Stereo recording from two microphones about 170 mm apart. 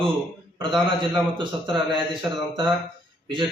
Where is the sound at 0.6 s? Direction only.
30° right (ahead or behind).